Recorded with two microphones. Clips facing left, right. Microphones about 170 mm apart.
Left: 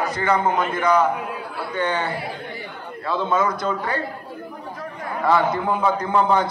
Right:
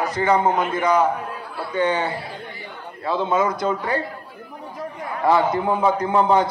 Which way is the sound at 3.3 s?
20° right (ahead or behind).